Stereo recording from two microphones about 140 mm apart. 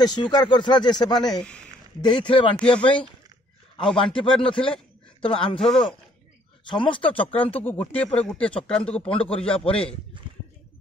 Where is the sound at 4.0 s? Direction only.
35° left (ahead or behind).